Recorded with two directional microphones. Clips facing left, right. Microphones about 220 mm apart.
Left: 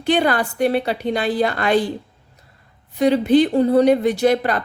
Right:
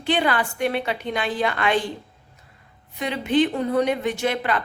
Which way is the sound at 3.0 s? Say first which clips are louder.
Left 7 dB; 35° left (ahead or behind).